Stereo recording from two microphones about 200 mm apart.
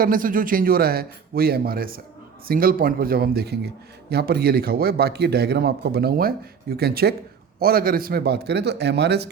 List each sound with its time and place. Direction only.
0.0 s speech: 45° right (ahead or behind)